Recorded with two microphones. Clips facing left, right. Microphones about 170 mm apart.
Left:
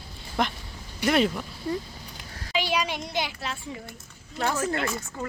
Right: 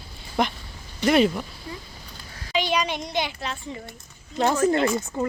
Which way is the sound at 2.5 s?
5° left (ahead or behind).